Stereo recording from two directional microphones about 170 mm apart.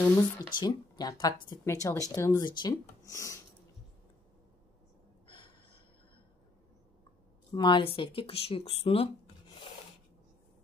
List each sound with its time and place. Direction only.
0.0 s speech: 20° left (ahead or behind)
3.1 s a sound: 20° left (ahead or behind)
5.2 s gasp: 30° left (ahead or behind)
7.5 s speech: 30° left (ahead or behind)